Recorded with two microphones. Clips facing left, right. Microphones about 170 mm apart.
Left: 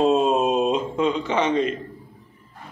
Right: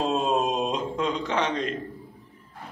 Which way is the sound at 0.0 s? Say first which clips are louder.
Left 6 dB; 5° left (ahead or behind).